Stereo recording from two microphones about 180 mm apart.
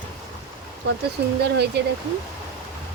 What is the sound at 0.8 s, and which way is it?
Speech, 70° right (ahead or behind).